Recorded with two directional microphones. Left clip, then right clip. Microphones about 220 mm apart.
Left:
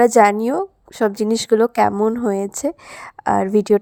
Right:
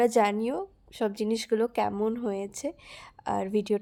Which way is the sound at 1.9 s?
20° left (ahead or behind).